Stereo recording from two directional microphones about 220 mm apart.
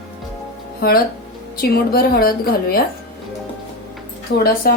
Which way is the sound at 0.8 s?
40° left (ahead or behind).